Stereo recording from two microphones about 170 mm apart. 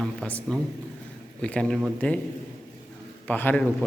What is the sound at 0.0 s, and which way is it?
Speech, 5° left (ahead or behind).